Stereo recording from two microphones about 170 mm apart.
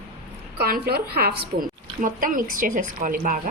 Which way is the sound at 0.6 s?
65° right (ahead or behind).